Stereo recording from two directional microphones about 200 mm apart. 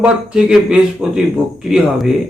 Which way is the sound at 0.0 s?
5° right (ahead or behind).